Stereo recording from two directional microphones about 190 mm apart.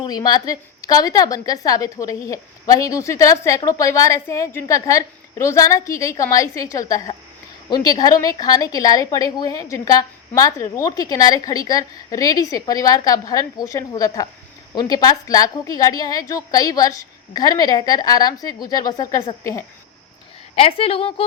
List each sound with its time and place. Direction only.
0.0 s a woman's voice: 20° left (ahead or behind)
20.6 s a woman's voice: 30° left (ahead or behind)